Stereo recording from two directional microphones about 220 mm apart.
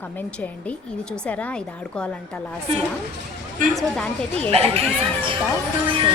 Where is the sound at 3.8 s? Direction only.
5° left (ahead or behind).